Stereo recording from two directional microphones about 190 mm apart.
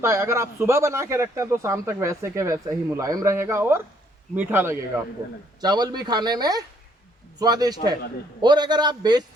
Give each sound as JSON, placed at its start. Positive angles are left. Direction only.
{"t": 0.0, "sound": "speech", "side_deg": -15}